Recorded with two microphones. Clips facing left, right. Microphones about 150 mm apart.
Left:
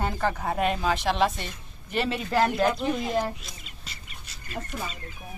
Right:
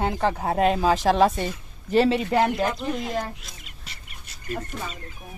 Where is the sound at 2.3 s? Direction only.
15° right (ahead or behind).